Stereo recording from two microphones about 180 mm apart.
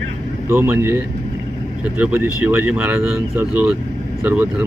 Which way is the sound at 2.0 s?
10° right (ahead or behind).